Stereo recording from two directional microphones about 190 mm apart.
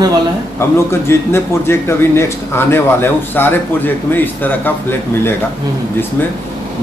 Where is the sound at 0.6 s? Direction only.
15° left (ahead or behind).